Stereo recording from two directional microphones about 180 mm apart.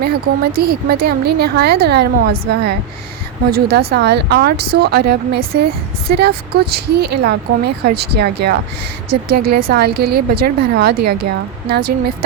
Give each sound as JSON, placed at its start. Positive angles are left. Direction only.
{"t": 0.5, "sound": "a woman's voice", "side_deg": -60}